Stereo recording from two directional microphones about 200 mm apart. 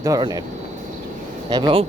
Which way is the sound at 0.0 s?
20° right (ahead or behind).